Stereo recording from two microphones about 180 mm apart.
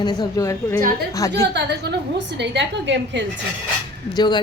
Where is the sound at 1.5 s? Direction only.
70° right (ahead or behind); by 3.2 s 85° right.